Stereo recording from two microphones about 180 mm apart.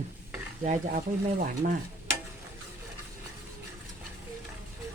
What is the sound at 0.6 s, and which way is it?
Stir, 45° right (ahead or behind).